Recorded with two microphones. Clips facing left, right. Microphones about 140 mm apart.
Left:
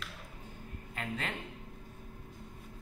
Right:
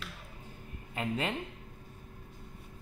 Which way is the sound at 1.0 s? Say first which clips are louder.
Right 5 dB; 10° right (ahead or behind).